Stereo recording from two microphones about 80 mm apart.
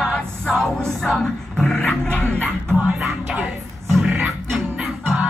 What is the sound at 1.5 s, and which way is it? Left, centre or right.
Dog, centre.